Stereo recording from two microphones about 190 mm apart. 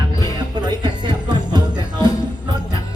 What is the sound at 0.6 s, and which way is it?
Music, 25° right (ahead or behind).